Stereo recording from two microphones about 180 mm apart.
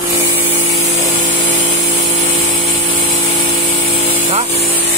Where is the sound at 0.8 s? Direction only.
40° left (ahead or behind).